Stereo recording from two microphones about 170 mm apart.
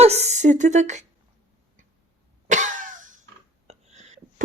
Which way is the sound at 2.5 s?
45° right (ahead or behind).